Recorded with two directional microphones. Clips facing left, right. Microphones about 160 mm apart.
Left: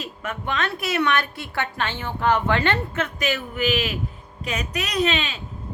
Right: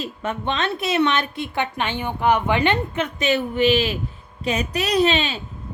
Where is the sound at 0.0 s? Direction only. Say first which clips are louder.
Right 5 dB; 30° right (ahead or behind).